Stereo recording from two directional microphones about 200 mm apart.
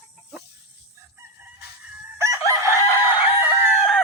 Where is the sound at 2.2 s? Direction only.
15° right (ahead or behind).